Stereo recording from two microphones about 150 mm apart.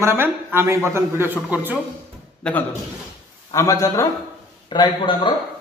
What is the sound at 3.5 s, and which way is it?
A man's voice, 20° left (ahead or behind).